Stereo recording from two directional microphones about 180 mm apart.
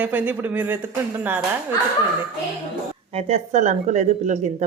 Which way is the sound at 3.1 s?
35° right (ahead or behind).